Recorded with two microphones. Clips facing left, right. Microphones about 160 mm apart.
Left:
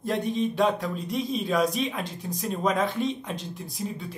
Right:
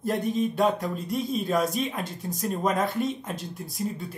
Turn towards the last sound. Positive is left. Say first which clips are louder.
# right 1 dB
turn(degrees=0)  # may be behind; listen again after turning